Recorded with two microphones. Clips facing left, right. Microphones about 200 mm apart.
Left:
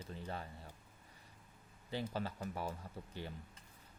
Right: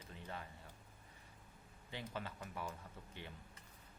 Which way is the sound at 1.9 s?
35° left (ahead or behind).